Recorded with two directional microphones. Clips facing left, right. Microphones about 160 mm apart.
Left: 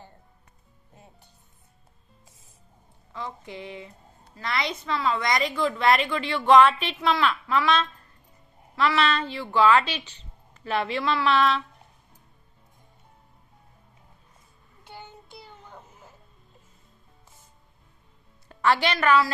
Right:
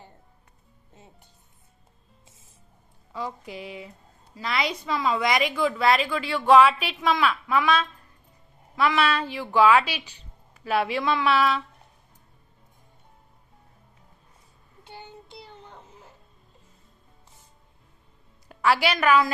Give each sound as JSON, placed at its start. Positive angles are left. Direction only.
{"t": 3.1, "sound": "a woman's voice", "side_deg": -10}
{"t": 18.5, "sound": "a woman's voice", "side_deg": -10}